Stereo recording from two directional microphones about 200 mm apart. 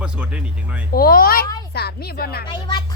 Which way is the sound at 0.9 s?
45° left (ahead or behind).